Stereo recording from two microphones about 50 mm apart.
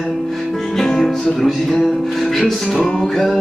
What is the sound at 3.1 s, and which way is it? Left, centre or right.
Music, centre.